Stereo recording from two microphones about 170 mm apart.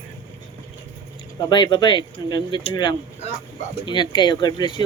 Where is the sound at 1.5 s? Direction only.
20° left (ahead or behind).